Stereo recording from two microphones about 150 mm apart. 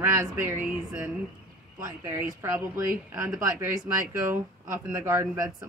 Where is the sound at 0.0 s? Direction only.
15° right (ahead or behind).